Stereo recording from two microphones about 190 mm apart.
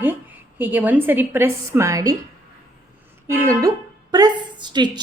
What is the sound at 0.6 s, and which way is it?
A woman's voice, 10° right (ahead or behind).